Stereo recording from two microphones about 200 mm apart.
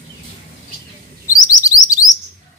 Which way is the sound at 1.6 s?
15° left (ahead or behind).